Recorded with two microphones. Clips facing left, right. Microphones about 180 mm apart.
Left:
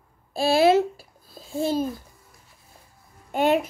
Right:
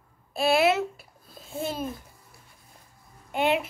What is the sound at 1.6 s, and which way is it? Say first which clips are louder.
Speech: left 7 dB; 30° left (ahead or behind).